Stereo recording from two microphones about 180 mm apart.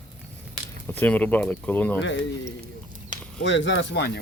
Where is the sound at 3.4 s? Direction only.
90° left; by 4.2 s 70° left (ahead or behind).